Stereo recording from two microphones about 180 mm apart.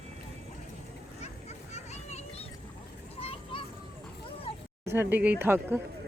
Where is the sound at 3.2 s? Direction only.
30° left (ahead or behind).